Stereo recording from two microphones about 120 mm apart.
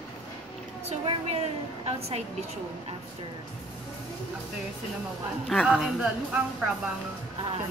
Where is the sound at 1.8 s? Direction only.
60° right (ahead or behind).